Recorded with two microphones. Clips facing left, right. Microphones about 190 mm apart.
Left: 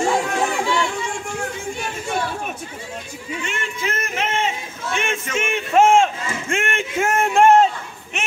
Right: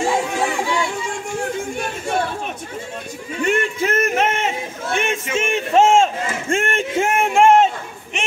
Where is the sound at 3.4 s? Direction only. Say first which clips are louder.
Right 11 dB; 45° right (ahead or behind).